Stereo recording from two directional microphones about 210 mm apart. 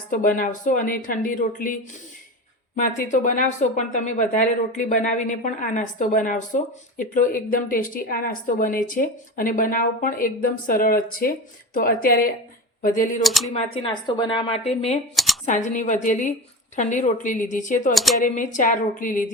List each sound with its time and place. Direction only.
0.1 s speech: 40° left (ahead or behind)
13.2 s speech: centre (ahead or behind)
13.5 s speech: 25° left (ahead or behind)
15.1 s a sound: centre (ahead or behind)
15.4 s speech: 35° left (ahead or behind)
17.9 s speech: centre (ahead or behind)
18.2 s speech: 40° left (ahead or behind)